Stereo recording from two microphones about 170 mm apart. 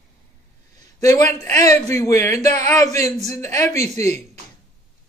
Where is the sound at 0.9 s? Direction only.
20° left (ahead or behind).